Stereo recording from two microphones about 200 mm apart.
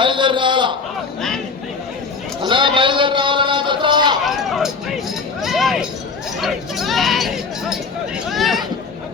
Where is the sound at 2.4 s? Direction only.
25° right (ahead or behind).